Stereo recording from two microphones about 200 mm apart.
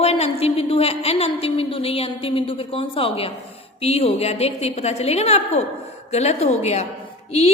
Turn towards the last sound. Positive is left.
turn(degrees=30)  # may be behind; listen again after turning